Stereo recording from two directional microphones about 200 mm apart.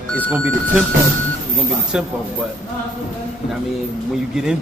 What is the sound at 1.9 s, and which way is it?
Speech, 5° right (ahead or behind).